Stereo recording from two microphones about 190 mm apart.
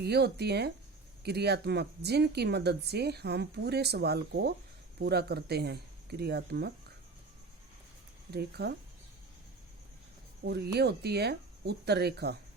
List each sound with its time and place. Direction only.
0.0 s speech: 60° right (ahead or behind)
8.3 s speech: 60° right (ahead or behind)
10.4 s speech: 60° right (ahead or behind)